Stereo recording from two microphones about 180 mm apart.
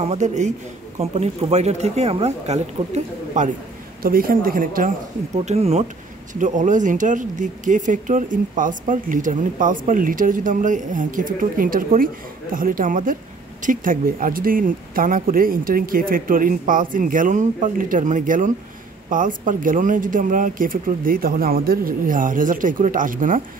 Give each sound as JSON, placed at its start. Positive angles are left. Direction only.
{"t": 0.0, "sound": "speech", "side_deg": -40}
{"t": 4.0, "sound": "speech", "side_deg": -55}